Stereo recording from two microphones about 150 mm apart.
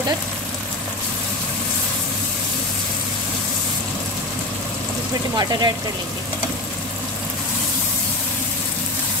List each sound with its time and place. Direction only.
5.3 s speech: 25° right (ahead or behind)